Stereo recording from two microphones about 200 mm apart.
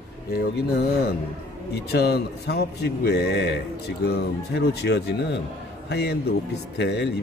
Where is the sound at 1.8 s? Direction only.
55° left (ahead or behind).